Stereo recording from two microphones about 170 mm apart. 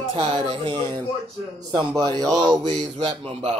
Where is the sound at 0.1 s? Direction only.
30° right (ahead or behind).